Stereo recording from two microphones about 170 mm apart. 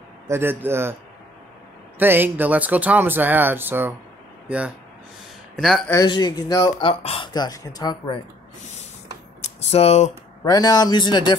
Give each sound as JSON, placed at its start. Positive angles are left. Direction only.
{"t": 0.3, "sound": "speech", "side_deg": -15}
{"t": 2.0, "sound": "speech", "side_deg": -10}
{"t": 6.0, "sound": "speech", "side_deg": 25}
{"t": 9.4, "sound": "speech", "side_deg": 40}
{"t": 10.4, "sound": "speech", "side_deg": 20}